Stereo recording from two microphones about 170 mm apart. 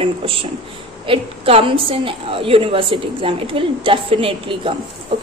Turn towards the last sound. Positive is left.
turn(degrees=-30)  # may be behind; listen again after turning